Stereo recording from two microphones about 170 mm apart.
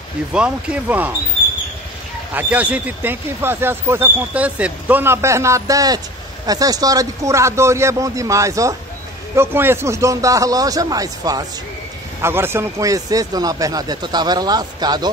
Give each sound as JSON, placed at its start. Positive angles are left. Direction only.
{"t": 0.3, "sound": "speech", "side_deg": -5}
{"t": 2.3, "sound": "speech", "side_deg": -10}